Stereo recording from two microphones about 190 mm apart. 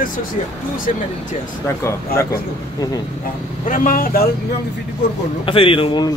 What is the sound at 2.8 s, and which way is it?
Speech, 20° left (ahead or behind).